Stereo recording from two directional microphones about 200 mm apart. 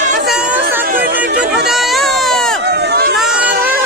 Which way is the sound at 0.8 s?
50° right (ahead or behind).